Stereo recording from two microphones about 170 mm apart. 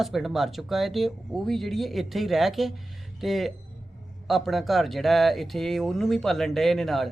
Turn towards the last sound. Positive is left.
turn(degrees=0)  # may be behind; listen again after turning